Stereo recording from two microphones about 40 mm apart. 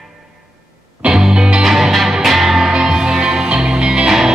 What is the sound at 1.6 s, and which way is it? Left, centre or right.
Music, centre.